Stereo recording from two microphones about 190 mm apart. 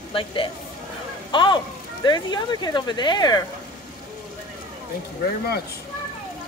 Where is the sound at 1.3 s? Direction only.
25° left (ahead or behind).